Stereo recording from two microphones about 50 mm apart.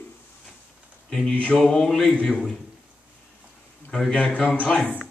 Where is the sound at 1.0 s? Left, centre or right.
Centre.